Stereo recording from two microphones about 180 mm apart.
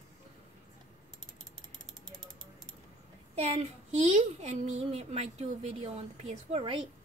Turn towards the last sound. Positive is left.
turn(degrees=-30)  # may be behind; listen again after turning